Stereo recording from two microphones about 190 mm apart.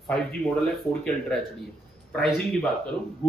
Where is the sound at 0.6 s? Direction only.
5° left (ahead or behind).